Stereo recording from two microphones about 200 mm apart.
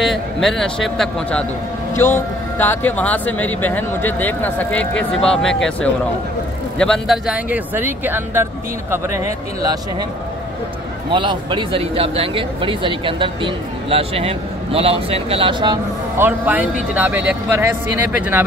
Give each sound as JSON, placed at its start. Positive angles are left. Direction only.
{"t": 0.0, "sound": "a man's voice", "side_deg": 0}
{"t": 11.1, "sound": "speech", "side_deg": -25}
{"t": 16.2, "sound": "speech", "side_deg": -10}